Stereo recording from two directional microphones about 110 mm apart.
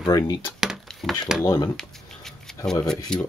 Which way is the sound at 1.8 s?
5° left (ahead or behind).